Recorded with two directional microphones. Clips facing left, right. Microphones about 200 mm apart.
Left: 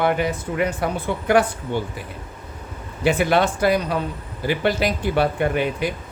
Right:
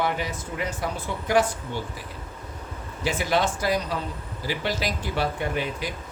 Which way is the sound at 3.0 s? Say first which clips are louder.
Left 6 dB; 60° left (ahead or behind).